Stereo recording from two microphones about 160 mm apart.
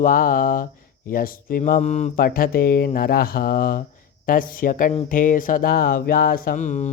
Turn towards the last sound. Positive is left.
turn(degrees=50)  # may be behind; listen again after turning